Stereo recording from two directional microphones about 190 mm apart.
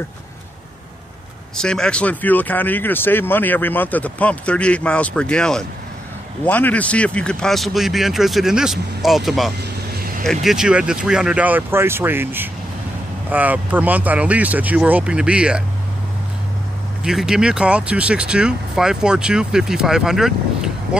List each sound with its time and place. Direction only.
1.6 s speech: 5° left (ahead or behind)
9.9 s vehicle: 50° right (ahead or behind)
10.4 s speech: 5° right (ahead or behind)
17.0 s speech: 5° right (ahead or behind)